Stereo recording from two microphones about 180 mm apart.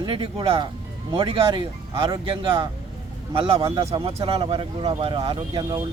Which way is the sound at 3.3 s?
30° right (ahead or behind).